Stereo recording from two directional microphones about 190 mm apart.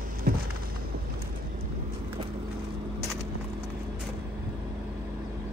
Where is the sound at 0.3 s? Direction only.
50° right (ahead or behind).